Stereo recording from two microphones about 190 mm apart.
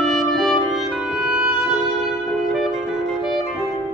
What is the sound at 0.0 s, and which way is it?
Music, centre (ahead or behind).